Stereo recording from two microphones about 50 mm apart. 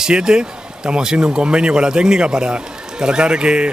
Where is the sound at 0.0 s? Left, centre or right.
Centre.